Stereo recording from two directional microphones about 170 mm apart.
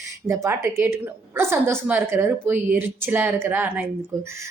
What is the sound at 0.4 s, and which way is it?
A woman's voice, 15° right (ahead or behind).